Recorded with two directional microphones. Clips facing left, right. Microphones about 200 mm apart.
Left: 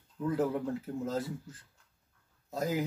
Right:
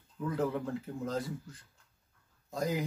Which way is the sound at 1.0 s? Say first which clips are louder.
Right 1 dB; 5° left (ahead or behind).